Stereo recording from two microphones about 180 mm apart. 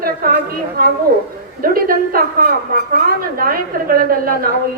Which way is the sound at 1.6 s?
55° right (ahead or behind).